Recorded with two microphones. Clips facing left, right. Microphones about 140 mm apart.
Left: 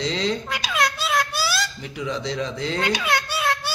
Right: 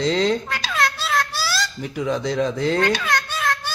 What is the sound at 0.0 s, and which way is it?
Babbling, 50° right (ahead or behind).